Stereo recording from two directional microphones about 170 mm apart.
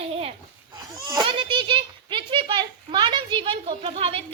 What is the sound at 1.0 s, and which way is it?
A child's voice, 25° right (ahead or behind).